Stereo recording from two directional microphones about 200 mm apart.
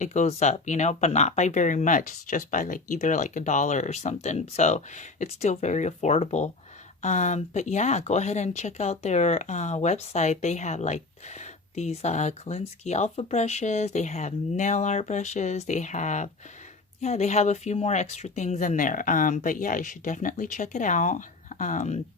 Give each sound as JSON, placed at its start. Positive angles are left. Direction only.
{"t": 0.0, "sound": "speech", "side_deg": 35}